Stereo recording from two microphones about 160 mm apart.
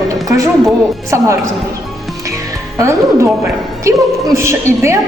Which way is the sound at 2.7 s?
20° right (ahead or behind).